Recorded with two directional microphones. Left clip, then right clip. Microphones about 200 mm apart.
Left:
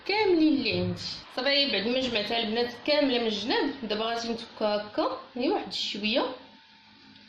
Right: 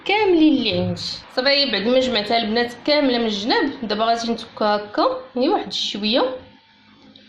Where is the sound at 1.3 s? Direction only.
35° right (ahead or behind).